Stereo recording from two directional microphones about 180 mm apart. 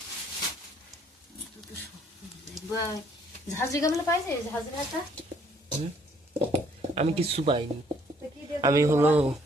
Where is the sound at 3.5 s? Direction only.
15° left (ahead or behind).